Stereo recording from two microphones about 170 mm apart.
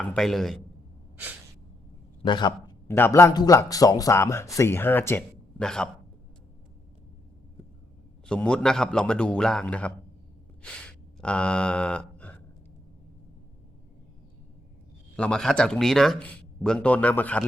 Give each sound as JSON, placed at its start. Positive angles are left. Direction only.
{"t": 0.0, "sound": "speech", "side_deg": 5}
{"t": 2.2, "sound": "a man's voice", "side_deg": 25}
{"t": 2.8, "sound": "a man's voice", "side_deg": 15}
{"t": 8.3, "sound": "speech", "side_deg": 5}
{"t": 10.6, "sound": "a sound", "side_deg": 5}
{"t": 15.1, "sound": "speech", "side_deg": 5}